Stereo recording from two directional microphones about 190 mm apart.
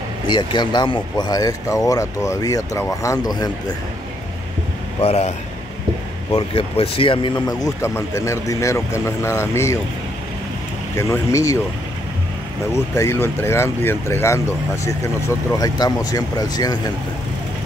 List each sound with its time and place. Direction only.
0.3 s speech: 25° left (ahead or behind)
5.0 s a man's voice: 35° left (ahead or behind)
6.3 s speech: 30° left (ahead or behind)
11.0 s speech: 15° left (ahead or behind)
12.7 s speech: 15° left (ahead or behind)